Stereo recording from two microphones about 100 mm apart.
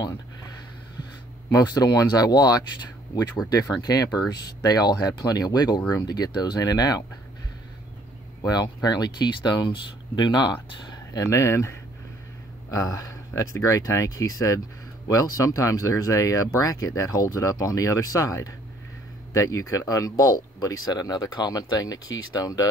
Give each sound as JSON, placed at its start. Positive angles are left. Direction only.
{"t": 1.5, "sound": "speech", "side_deg": 40}
{"t": 8.4, "sound": "speech", "side_deg": 45}
{"t": 11.1, "sound": "speech", "side_deg": 30}
{"t": 12.7, "sound": "speech", "side_deg": 35}